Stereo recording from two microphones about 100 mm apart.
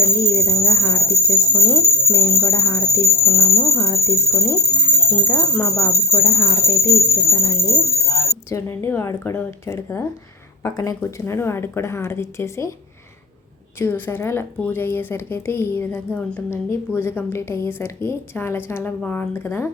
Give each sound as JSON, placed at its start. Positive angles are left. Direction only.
{"t": 0.0, "sound": "jingle bell", "side_deg": 25}
{"t": 1.6, "sound": "a woman's voice", "side_deg": 30}
{"t": 3.2, "sound": "speech", "side_deg": 5}
{"t": 3.8, "sound": "a woman's voice", "side_deg": 30}
{"t": 11.0, "sound": "a woman's voice", "side_deg": 25}
{"t": 13.7, "sound": "a woman's voice", "side_deg": 20}